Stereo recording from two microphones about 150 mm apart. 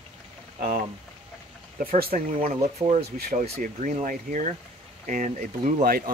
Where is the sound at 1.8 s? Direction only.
80° right.